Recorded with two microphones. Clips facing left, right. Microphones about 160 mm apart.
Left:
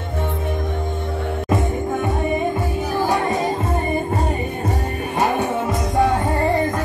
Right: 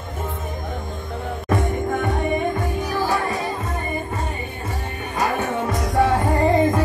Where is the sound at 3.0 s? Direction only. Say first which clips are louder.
Left 3 dB; 20° left (ahead or behind).